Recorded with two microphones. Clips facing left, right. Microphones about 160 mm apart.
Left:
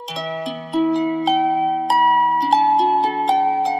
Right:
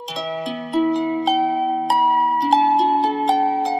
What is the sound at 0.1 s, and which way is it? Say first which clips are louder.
Music: even; centre (ahead or behind).